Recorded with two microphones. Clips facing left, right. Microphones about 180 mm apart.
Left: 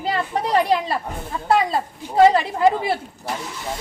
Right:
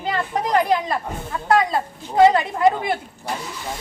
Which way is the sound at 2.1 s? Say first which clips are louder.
Even; 30° left (ahead or behind).